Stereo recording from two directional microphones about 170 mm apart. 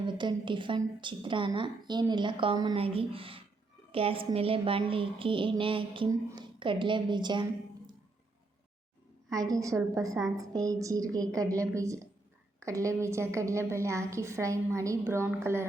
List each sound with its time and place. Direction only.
0.0 s a woman's voice: 25° right (ahead or behind)
9.3 s a woman's voice: 20° right (ahead or behind)
10.2 s a woman's voice: centre (ahead or behind)
10.5 s a woman's voice: 20° right (ahead or behind)